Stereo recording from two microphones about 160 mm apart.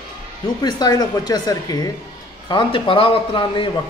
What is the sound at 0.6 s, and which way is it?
A man's voice, 25° left (ahead or behind).